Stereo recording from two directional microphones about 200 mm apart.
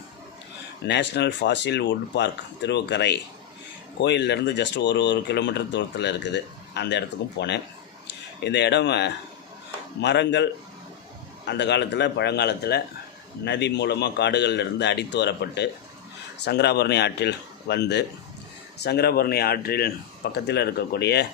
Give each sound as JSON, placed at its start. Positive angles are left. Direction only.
{"t": 0.9, "sound": "speech", "side_deg": 60}